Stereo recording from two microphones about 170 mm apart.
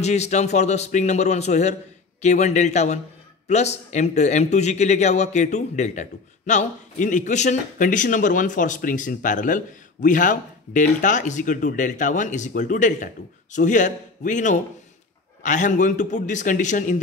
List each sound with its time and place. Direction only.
0.0 s a man's voice: 40° left (ahead or behind)